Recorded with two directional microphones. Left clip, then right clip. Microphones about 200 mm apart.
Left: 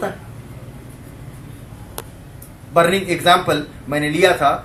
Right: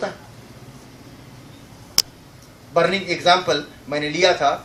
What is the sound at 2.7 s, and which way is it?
Speech, 20° right (ahead or behind).